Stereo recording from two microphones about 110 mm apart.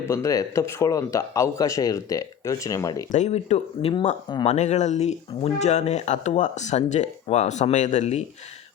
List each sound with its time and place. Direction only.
0.1 s speech: 30° left (ahead or behind)
3.2 s speech: 85° left
3.8 s speech: 55° left (ahead or behind)
4.4 s speech: 90° left